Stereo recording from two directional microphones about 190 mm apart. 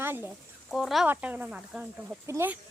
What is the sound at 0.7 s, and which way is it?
Speech, centre (ahead or behind).